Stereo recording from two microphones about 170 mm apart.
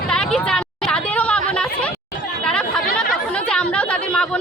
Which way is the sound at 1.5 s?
5° left (ahead or behind).